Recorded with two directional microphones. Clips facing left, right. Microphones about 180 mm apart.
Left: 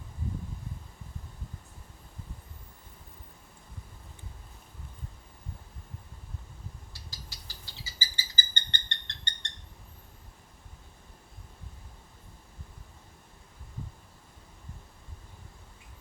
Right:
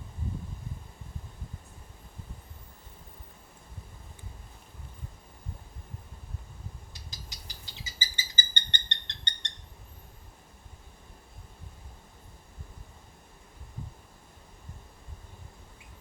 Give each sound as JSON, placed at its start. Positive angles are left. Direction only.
{"t": 6.9, "sound": "bird", "side_deg": -20}